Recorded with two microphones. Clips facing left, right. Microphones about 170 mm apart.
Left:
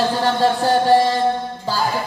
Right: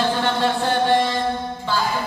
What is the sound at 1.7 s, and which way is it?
Music, 40° left (ahead or behind).